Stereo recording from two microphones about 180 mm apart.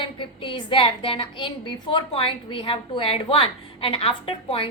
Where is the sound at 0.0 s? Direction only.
30° left (ahead or behind).